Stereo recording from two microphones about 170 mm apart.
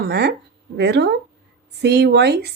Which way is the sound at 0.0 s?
75° right (ahead or behind).